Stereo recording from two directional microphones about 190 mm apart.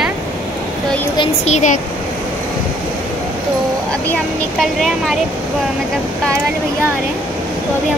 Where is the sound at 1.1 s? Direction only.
30° left (ahead or behind).